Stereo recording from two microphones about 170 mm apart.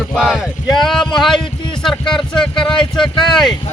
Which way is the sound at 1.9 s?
25° left (ahead or behind).